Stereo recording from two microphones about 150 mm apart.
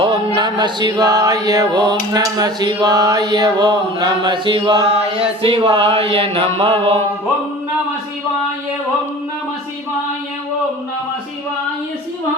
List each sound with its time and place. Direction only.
0.0 s male singing: 30° right (ahead or behind)
5.4 s mantra: 35° right (ahead or behind)